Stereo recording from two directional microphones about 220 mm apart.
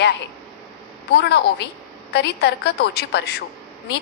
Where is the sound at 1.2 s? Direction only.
50° left (ahead or behind).